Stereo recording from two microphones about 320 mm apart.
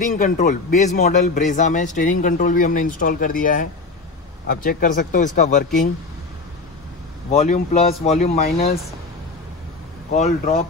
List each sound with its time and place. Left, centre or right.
0.0 s a man's voice: left
7.2 s a man's voice: centre
10.1 s a man's voice: left